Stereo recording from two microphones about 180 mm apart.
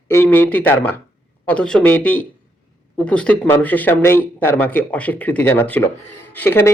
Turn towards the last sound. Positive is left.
turn(degrees=15)  # may be behind; listen again after turning